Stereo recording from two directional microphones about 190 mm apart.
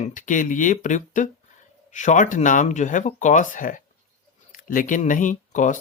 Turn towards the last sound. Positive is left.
turn(degrees=40)  # may be behind; listen again after turning